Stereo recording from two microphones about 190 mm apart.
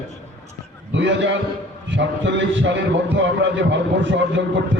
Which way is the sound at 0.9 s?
70° right (ahead or behind).